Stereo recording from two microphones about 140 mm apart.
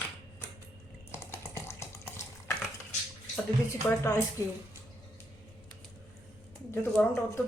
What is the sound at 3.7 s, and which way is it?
Speech, 20° left (ahead or behind).